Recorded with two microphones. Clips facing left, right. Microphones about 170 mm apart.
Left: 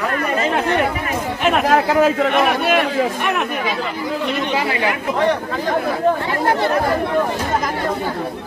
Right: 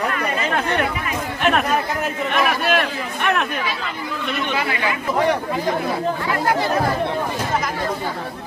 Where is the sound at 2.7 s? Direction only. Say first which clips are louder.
Left 4 dB; 10° left (ahead or behind).